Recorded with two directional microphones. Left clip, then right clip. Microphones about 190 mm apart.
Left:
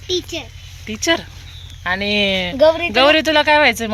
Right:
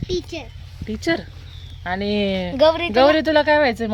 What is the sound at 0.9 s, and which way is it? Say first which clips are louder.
Speech: left 5 dB; 20° right (ahead or behind).